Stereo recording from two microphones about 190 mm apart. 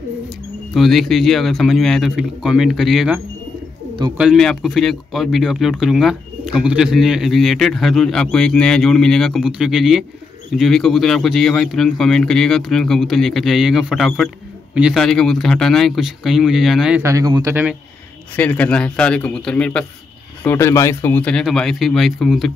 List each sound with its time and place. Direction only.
0.7 s speech: centre (ahead or behind)
4.2 s speech: centre (ahead or behind)
17.0 s speech: 15° right (ahead or behind)
18.3 s speech: 10° left (ahead or behind)